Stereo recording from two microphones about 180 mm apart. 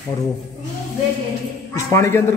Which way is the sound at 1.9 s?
15° left (ahead or behind).